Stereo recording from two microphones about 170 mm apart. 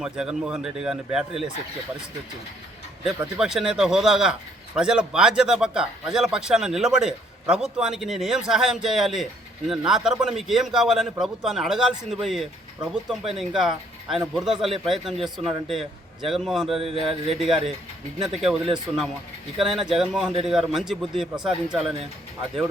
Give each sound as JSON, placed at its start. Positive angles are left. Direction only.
{"t": 0.0, "sound": "speech", "side_deg": -5}
{"t": 3.0, "sound": "speech", "side_deg": 0}
{"t": 16.7, "sound": "speech", "side_deg": -35}
{"t": 18.3, "sound": "speech", "side_deg": 0}